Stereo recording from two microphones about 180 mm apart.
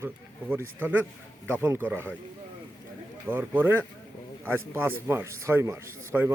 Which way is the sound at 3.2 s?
10° right (ahead or behind).